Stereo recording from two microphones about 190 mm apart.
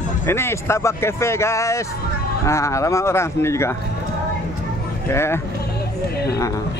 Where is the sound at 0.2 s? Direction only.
15° left (ahead or behind).